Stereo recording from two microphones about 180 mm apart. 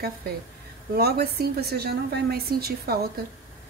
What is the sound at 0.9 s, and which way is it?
A woman's voice, 60° right (ahead or behind).